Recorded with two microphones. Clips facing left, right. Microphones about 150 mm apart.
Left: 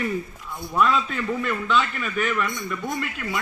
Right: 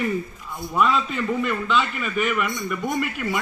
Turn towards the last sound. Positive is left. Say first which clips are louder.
# right 4 dB
turn(degrees=-20)  # may be behind; listen again after turning